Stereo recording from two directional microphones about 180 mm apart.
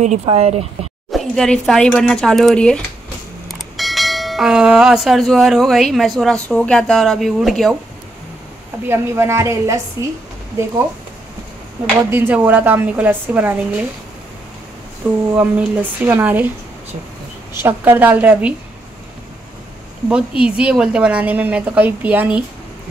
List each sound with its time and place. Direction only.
0.0 s speech: 40° right (ahead or behind)
1.1 s speech: 5° left (ahead or behind)
8.8 s a woman's voice: 15° right (ahead or behind)
12.1 s a woman's voice: 10° right (ahead or behind)
15.3 s a woman's voice: 10° right (ahead or behind)
17.6 s a woman's voice: 10° right (ahead or behind)
20.1 s a woman's voice: 5° right (ahead or behind)